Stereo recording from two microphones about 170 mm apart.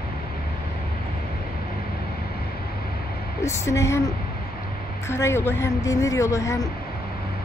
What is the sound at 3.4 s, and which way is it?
Speech, 15° left (ahead or behind).